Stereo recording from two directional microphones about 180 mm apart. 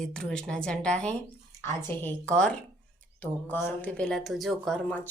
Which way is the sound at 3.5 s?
10° left (ahead or behind).